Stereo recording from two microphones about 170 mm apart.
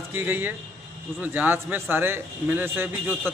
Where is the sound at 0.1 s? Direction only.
10° right (ahead or behind).